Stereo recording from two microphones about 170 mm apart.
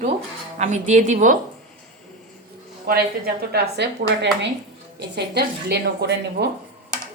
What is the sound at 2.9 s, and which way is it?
Speech, 65° right (ahead or behind).